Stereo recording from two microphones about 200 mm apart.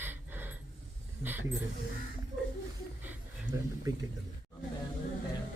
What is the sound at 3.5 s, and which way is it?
Speech, 20° right (ahead or behind).